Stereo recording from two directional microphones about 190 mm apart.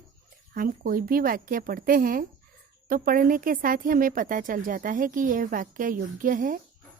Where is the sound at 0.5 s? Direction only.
45° right (ahead or behind).